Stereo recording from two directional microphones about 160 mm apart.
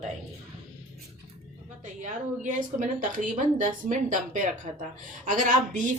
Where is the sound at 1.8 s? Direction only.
50° right (ahead or behind).